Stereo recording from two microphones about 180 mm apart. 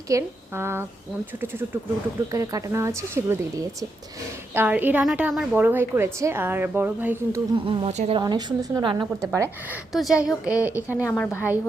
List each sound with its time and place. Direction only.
0.1 s a woman's voice: 15° right (ahead or behind)
2.3 s a woman's voice: 15° right (ahead or behind)
7.7 s a woman's voice: 35° right (ahead or behind)
8.2 s a woman's voice: 25° right (ahead or behind)
9.9 s a woman's voice: centre (ahead or behind)
11.1 s a woman's voice: 10° left (ahead or behind)